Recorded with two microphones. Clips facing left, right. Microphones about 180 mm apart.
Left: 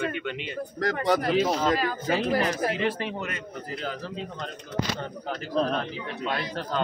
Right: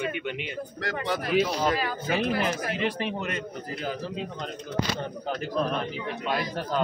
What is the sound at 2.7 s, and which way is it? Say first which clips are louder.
Speech: left 1 dB; 15° right (ahead or behind).